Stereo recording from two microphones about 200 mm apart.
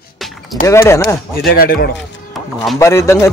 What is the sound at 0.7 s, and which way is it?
Speech, 15° left (ahead or behind).